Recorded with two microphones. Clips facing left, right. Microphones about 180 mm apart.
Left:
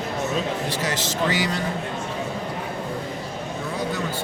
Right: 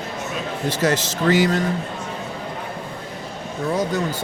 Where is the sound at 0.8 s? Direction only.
45° right (ahead or behind).